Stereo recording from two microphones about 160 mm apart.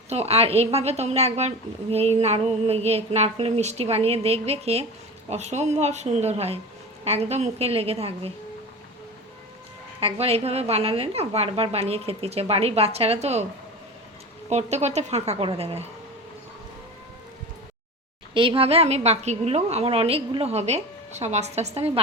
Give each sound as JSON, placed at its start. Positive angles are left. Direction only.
{"t": 0.1, "sound": "a woman's voice", "side_deg": -40}
{"t": 10.0, "sound": "a woman's voice", "side_deg": -35}
{"t": 14.5, "sound": "speech", "side_deg": -45}
{"t": 18.3, "sound": "a woman's voice", "side_deg": -35}